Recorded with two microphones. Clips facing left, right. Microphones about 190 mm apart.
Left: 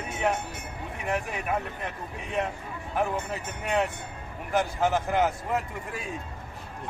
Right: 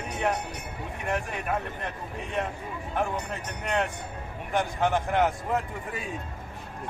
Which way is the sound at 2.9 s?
5° left (ahead or behind).